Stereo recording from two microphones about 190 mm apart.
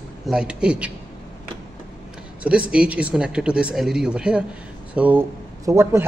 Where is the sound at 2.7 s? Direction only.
5° right (ahead or behind).